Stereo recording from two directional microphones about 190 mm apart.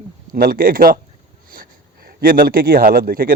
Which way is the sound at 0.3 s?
50° right (ahead or behind).